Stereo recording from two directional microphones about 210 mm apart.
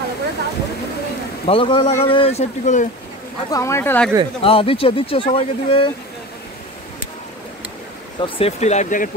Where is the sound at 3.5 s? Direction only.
15° left (ahead or behind).